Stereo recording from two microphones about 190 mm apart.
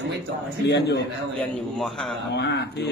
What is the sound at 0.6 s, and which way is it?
Speech, 65° left (ahead or behind).